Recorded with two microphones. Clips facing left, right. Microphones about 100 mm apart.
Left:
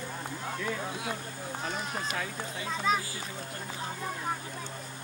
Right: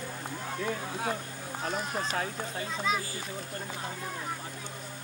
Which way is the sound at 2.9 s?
45° left (ahead or behind).